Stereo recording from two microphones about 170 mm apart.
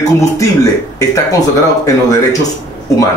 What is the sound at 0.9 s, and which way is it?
Speech, 20° left (ahead or behind).